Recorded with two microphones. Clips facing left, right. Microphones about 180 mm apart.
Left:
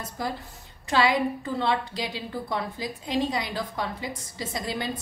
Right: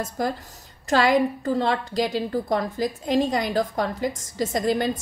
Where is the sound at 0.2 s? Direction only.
45° right (ahead or behind).